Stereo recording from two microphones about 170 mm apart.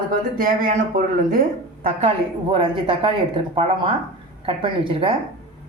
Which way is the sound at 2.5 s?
30° right (ahead or behind).